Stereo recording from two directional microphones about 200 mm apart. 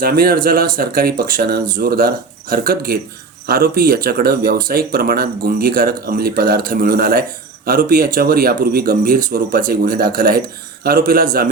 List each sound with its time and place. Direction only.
0.0 s speech: 50° right (ahead or behind)